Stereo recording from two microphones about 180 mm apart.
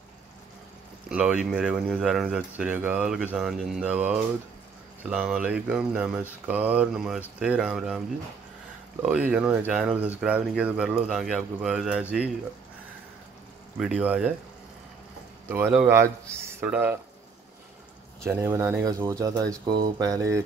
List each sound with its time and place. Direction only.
1.0 s speech: 5° right (ahead or behind)
9.0 s speech: 5° right (ahead or behind)
13.7 s speech: 5° right (ahead or behind)
15.4 s speech: 10° right (ahead or behind)
18.2 s speech: 15° right (ahead or behind)